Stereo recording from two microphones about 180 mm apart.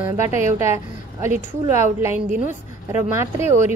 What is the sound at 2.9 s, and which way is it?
Speech, 15° right (ahead or behind).